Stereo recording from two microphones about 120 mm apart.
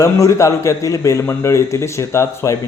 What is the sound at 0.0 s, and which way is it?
A man's voice, 25° left (ahead or behind).